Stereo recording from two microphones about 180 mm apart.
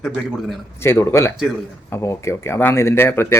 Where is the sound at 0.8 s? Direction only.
15° left (ahead or behind).